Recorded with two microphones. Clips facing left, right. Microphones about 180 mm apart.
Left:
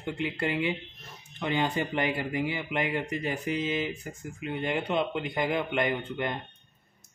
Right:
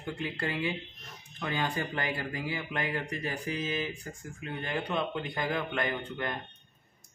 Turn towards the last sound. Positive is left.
turn(degrees=20)  # may be behind; listen again after turning